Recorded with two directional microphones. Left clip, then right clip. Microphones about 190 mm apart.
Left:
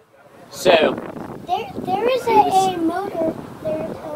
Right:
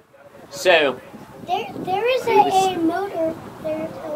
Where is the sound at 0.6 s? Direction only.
15° right (ahead or behind).